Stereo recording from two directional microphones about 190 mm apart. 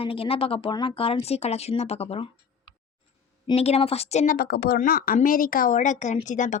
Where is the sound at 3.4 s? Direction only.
30° left (ahead or behind).